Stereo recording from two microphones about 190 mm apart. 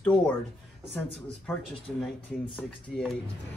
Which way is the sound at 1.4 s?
5° left (ahead or behind).